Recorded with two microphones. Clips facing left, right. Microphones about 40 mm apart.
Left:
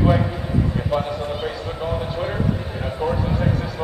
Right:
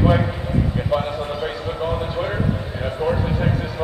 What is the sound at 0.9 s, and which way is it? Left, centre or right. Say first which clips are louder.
A man's voice: right 1 dB; centre.